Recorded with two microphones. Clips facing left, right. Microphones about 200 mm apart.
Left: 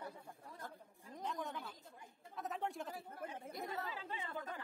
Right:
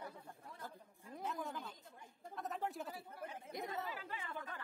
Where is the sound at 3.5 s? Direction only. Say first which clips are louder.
Right 2 dB; 20° right (ahead or behind).